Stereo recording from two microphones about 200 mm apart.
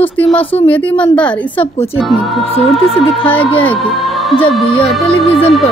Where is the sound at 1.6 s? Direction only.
30° left (ahead or behind).